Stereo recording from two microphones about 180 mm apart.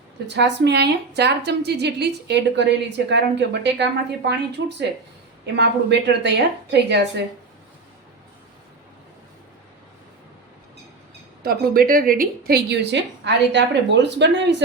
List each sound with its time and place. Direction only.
0.3 s a woman's voice: 75° right (ahead or behind)
11.4 s a woman's voice: 55° right (ahead or behind); by 14.5 s 75° right (ahead or behind)